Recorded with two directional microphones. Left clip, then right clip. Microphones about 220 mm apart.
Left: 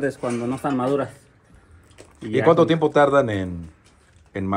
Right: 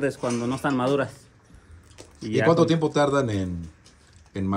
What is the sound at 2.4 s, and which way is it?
A man's voice, 20° right (ahead or behind).